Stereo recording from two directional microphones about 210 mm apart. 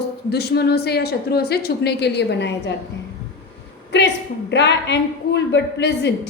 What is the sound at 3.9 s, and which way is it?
A woman's voice, 55° left (ahead or behind).